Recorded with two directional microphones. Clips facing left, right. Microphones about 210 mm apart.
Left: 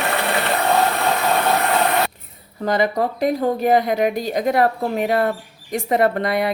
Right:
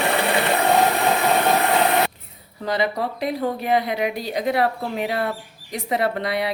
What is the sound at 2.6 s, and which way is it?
Speech, 50° left (ahead or behind).